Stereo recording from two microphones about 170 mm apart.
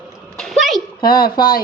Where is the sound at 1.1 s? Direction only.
25° left (ahead or behind).